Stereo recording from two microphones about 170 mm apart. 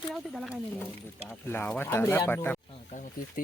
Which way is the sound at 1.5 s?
10° left (ahead or behind).